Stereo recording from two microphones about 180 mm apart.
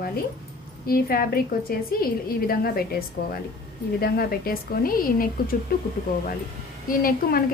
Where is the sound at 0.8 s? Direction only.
55° left (ahead or behind).